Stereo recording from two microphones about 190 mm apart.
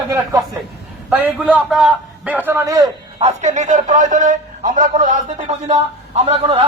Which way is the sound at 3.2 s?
40° right (ahead or behind).